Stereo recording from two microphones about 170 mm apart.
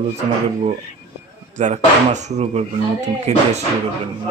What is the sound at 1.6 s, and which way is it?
Speech, 45° right (ahead or behind).